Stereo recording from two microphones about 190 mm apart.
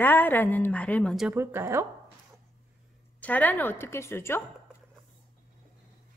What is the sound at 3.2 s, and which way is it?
A woman's voice, 10° left (ahead or behind).